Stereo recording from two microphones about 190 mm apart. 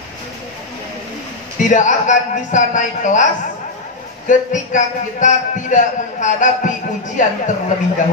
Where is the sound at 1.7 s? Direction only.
40° left (ahead or behind).